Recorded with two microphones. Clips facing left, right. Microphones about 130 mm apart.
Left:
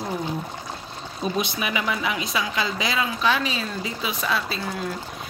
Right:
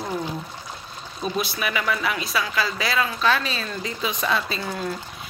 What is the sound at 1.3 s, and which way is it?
A woman's voice, 20° left (ahead or behind).